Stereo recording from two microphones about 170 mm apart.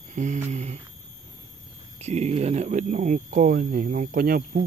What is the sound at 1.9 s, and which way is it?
Speech, 40° right (ahead or behind).